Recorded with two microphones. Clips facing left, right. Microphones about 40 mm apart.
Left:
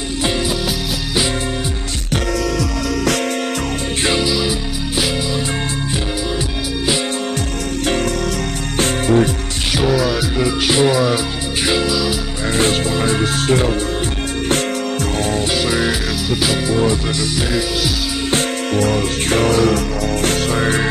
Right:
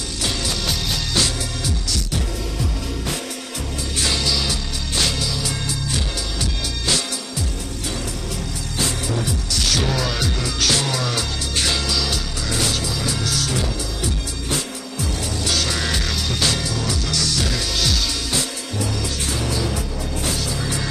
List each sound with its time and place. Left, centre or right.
8.7 s music: left
9.7 s music: centre
10.3 s music: left
12.5 s music: left
15.5 s music: centre
16.6 s music: left
18.8 s music: left